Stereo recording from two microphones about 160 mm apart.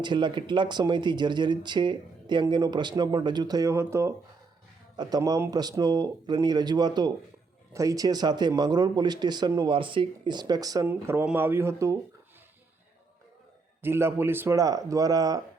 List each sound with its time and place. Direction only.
0.0 s speech: 30° right (ahead or behind)
13.8 s speech: 15° right (ahead or behind)